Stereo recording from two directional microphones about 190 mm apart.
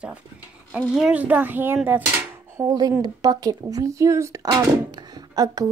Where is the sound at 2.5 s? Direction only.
20° right (ahead or behind).